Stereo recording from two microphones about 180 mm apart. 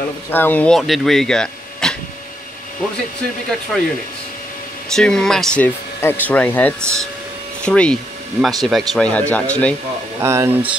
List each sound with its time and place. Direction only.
0.3 s speech: 10° left (ahead or behind)
3.7 s speech: centre (ahead or behind)
4.9 s speech: 5° left (ahead or behind)
10.2 s speech: 15° right (ahead or behind)